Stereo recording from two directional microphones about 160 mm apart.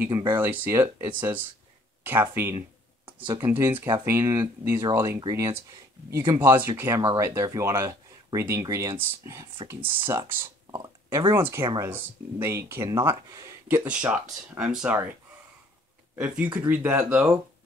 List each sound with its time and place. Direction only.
0.3 s speech: 15° right (ahead or behind)
16.6 s speech: 10° right (ahead or behind)